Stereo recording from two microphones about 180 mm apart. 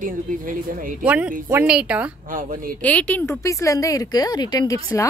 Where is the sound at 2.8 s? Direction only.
10° left (ahead or behind).